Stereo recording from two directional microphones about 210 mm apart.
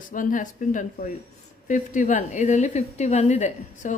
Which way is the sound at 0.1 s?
40° left (ahead or behind).